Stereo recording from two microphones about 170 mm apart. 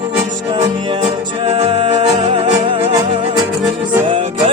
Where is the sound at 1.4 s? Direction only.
30° right (ahead or behind).